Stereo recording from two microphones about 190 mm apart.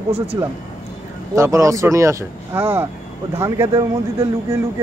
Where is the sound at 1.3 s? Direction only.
15° right (ahead or behind).